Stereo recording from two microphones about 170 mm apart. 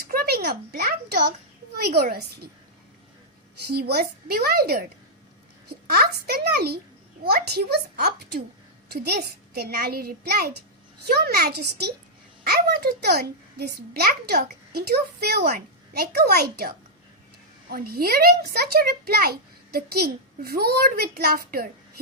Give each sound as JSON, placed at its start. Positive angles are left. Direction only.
{"t": 0.0, "sound": "a sound", "side_deg": -65}
{"t": 1.8, "sound": "a child's voice", "side_deg": -70}
{"t": 3.7, "sound": "a child's voice", "side_deg": -70}
{"t": 5.9, "sound": "a child's voice", "side_deg": -70}